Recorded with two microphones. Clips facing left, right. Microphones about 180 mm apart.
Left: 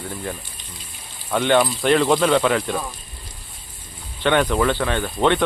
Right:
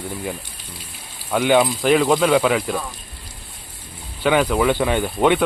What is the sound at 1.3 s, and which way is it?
Speech, 10° right (ahead or behind).